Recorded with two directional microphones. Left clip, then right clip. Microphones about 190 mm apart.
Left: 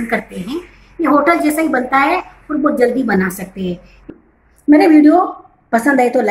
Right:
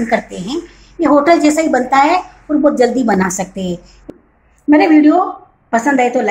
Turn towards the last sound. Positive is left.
turn(degrees=10)  # may be behind; listen again after turning